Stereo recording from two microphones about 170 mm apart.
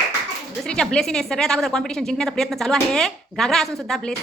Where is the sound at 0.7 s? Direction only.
5° left (ahead or behind).